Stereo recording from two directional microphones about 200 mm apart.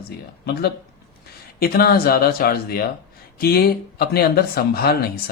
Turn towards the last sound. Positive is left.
turn(degrees=50)  # may be behind; listen again after turning